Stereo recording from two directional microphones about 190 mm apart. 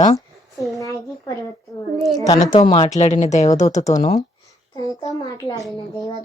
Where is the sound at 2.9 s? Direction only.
35° left (ahead or behind).